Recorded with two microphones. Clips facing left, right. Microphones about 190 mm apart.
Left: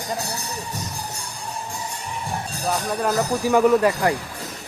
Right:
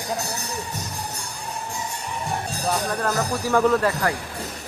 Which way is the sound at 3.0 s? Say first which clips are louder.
Left 3 dB; 10° left (ahead or behind).